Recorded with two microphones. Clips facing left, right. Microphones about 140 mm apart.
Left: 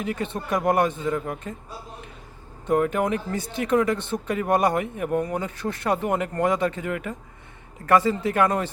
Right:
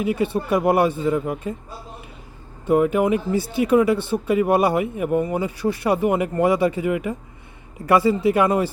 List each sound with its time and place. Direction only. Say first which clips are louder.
0.0 s speech: right 7 dB; 10° right (ahead or behind)
2.6 s speech: right 4 dB; 5° right (ahead or behind)